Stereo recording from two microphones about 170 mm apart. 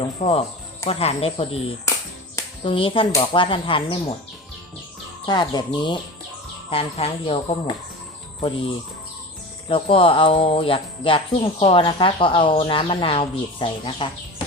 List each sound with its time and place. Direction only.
0.2 s speech: 40° left (ahead or behind)
2.6 s speech: 30° left (ahead or behind)
5.2 s speech: 25° left (ahead or behind)